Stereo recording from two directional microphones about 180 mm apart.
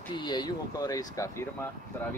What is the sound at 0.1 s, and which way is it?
Speech, 25° left (ahead or behind).